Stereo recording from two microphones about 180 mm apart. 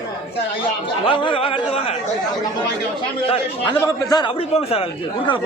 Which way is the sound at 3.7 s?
15° left (ahead or behind).